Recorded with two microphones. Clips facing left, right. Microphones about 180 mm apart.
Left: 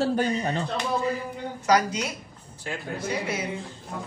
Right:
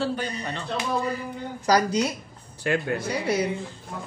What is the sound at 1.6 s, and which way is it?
Speech, 35° right (ahead or behind).